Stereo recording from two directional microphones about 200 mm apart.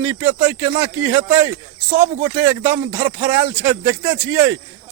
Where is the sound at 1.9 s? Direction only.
40° right (ahead or behind).